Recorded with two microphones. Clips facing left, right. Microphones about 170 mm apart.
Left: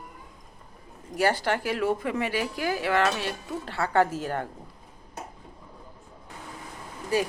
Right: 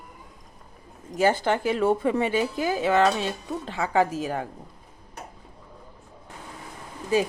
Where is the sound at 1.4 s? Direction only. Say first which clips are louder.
Right 3 dB; 25° right (ahead or behind).